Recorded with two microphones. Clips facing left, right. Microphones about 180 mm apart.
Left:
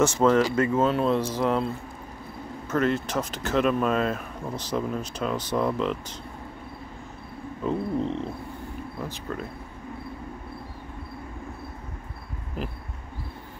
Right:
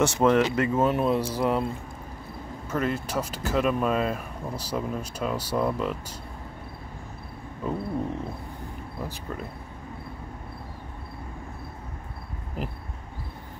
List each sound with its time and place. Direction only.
0.2 s speech: 20° right (ahead or behind)
2.7 s speech: 10° right (ahead or behind)
7.6 s speech: 10° right (ahead or behind)